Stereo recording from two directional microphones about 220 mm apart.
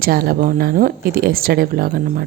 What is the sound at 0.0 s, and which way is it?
A woman's voice, 45° right (ahead or behind).